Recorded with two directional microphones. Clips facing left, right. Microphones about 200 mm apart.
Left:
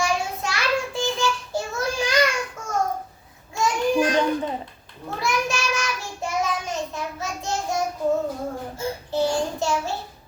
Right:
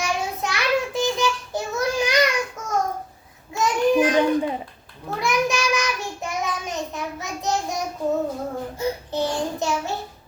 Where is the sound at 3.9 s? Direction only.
20° right (ahead or behind).